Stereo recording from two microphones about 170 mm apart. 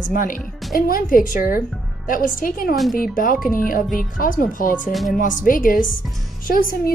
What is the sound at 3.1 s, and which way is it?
A woman's voice, 55° left (ahead or behind).